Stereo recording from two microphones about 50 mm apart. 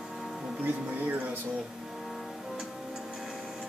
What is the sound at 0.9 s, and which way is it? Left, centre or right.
Speech, right.